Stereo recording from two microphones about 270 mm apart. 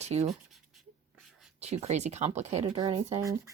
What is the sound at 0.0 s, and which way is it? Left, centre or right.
Speech, right.